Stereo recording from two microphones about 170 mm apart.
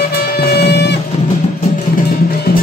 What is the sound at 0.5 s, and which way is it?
Music, 70° left (ahead or behind).